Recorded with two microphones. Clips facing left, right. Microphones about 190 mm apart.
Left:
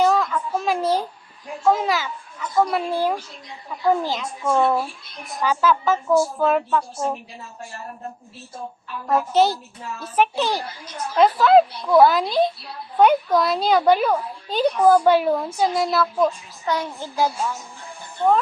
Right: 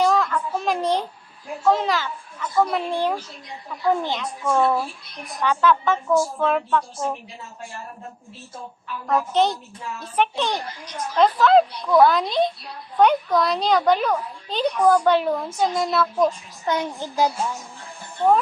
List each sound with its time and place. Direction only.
0.0 s a sound: 10° left (ahead or behind)
1.6 s a woman's voice: 5° left (ahead or behind)
9.0 s a woman's voice: 5° left (ahead or behind)
16.2 s a child's voice: 20° right (ahead or behind)